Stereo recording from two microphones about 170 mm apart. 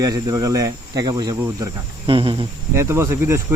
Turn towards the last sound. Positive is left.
turn(degrees=-15)  # may be behind; listen again after turning